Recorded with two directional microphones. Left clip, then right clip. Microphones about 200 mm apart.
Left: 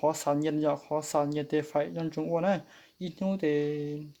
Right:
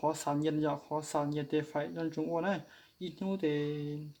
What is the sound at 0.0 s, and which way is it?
Speech, 50° left (ahead or behind).